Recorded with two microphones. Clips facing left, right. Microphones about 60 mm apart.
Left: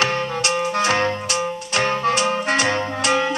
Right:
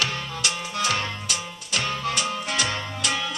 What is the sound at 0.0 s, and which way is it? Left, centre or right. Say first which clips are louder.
Music: left 7 dB; left.